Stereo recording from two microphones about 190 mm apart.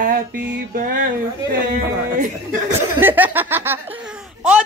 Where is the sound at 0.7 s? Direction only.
45° right (ahead or behind).